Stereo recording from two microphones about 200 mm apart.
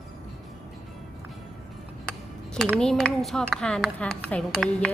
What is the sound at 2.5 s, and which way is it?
A woman's voice, centre (ahead or behind).